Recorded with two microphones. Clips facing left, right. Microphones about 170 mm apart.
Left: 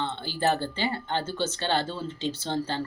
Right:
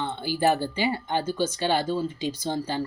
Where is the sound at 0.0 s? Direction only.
10° right (ahead or behind).